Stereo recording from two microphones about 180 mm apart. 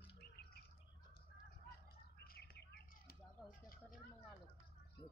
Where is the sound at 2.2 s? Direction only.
60° left (ahead or behind).